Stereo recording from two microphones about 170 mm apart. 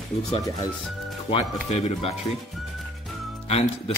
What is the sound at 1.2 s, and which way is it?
Speech, 35° left (ahead or behind).